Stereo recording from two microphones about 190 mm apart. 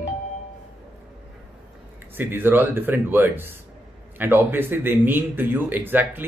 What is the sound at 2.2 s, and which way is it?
A woman's voice, 10° right (ahead or behind).